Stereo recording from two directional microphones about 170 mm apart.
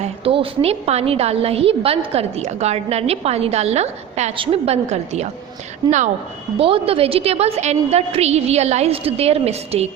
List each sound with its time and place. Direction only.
0.0 s a woman's voice: 35° right (ahead or behind)
6.6 s a woman's voice: 35° right (ahead or behind)